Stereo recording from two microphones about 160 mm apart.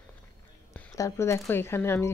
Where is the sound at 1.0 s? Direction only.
20° left (ahead or behind).